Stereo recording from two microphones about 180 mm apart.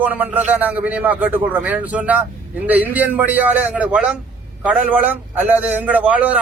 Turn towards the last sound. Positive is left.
turn(degrees=-5)  # may be behind; listen again after turning